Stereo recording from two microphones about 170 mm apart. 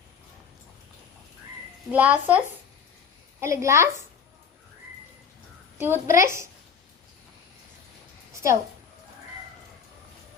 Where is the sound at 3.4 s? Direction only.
15° right (ahead or behind).